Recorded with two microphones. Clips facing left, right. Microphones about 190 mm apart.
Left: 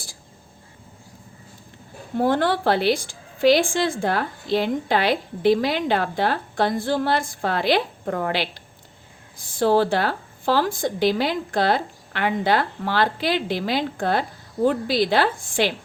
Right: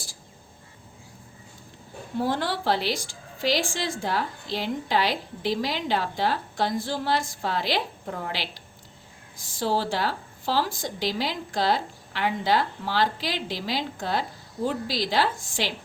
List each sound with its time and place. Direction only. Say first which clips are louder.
2.1 s a woman's voice: left 6 dB; 55° left (ahead or behind)